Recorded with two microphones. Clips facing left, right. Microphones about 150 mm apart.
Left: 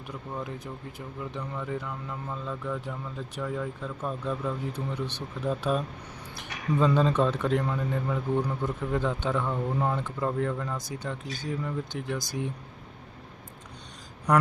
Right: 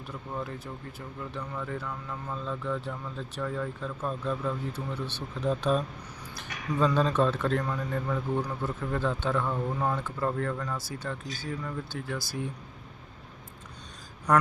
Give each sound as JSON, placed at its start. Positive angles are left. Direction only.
{"t": 0.3, "sound": "speech", "side_deg": 15}